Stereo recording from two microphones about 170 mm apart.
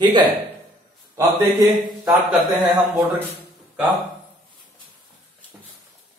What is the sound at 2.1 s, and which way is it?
Speech, centre (ahead or behind).